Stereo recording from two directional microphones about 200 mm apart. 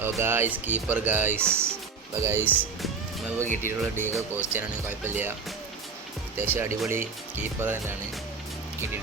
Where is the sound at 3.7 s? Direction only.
10° right (ahead or behind).